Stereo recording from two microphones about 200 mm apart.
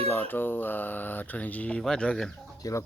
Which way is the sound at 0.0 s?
10° left (ahead or behind).